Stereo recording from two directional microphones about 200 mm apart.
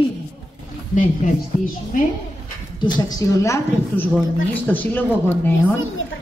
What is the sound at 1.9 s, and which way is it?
Speech, 40° left (ahead or behind).